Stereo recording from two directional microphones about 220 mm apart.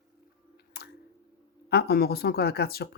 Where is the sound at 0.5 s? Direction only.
45° left (ahead or behind).